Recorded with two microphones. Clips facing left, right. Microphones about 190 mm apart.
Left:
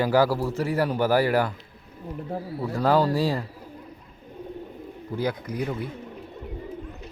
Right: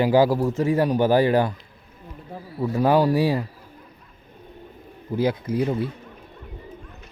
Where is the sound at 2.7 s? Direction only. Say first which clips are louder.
Right 3 dB; 15° right (ahead or behind).